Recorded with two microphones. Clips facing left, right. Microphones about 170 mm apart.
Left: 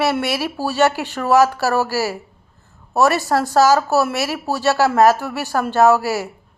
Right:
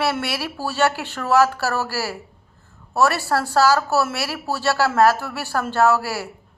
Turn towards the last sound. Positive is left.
turn(degrees=15)  # may be behind; listen again after turning